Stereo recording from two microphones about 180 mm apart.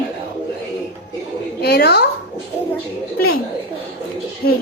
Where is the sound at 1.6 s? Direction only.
65° left (ahead or behind).